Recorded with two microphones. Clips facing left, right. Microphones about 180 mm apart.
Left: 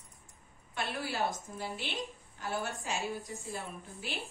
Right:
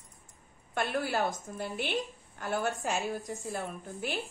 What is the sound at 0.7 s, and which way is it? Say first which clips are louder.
A woman's voice: right 6 dB; 55° right (ahead or behind).